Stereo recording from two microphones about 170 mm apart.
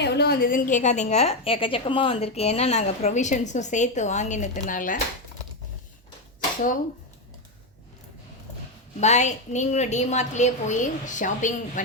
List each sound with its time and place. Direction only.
0.0 s a woman's voice: 70° left (ahead or behind); by 4.9 s 50° left (ahead or behind)
9.0 s a woman's voice: 45° left (ahead or behind)